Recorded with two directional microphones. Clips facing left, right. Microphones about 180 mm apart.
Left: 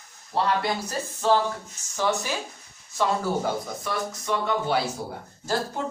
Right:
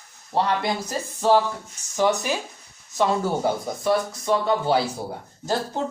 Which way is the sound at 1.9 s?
15° right (ahead or behind).